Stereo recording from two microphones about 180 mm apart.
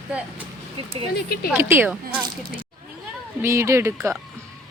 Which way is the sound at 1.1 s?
60° left (ahead or behind).